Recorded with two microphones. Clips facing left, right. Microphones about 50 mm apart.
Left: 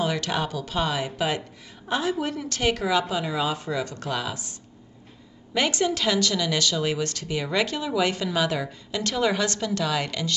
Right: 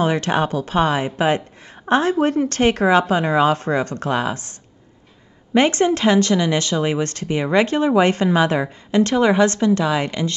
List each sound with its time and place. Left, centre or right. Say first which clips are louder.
0.0 s a woman's voice: right 7 dB; right